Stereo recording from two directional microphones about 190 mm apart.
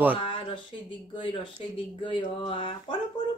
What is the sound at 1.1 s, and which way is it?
Speech, 25° left (ahead or behind).